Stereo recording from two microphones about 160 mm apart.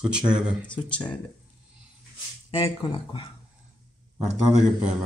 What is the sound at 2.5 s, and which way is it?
Speech, 35° left (ahead or behind).